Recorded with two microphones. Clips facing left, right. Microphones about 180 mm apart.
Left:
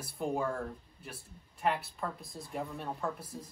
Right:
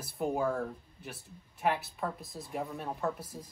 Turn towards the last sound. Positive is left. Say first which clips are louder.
# right 2 dB
turn(degrees=0)  # may be behind; listen again after turning